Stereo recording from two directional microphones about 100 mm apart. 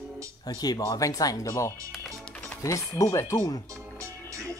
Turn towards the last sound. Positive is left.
turn(degrees=30)  # may be behind; listen again after turning